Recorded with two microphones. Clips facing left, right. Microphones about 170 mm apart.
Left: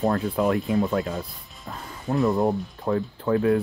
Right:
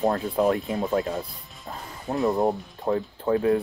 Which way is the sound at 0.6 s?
20° right (ahead or behind).